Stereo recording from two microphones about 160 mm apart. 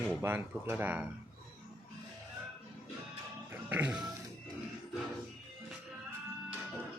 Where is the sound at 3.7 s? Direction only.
10° right (ahead or behind).